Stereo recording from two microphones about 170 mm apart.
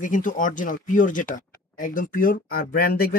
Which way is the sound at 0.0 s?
50° left (ahead or behind).